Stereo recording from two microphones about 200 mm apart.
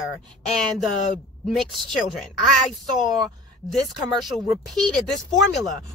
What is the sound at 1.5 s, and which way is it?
A woman's voice, centre (ahead or behind).